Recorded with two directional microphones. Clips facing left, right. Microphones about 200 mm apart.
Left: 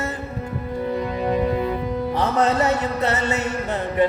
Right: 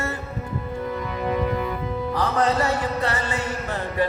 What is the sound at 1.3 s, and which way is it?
Music, 25° left (ahead or behind).